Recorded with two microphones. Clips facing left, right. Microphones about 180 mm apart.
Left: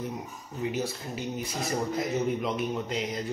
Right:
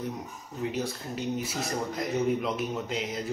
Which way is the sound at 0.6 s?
Centre (ahead or behind).